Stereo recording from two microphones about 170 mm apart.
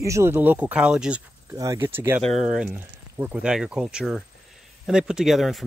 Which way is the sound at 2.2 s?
Centre (ahead or behind).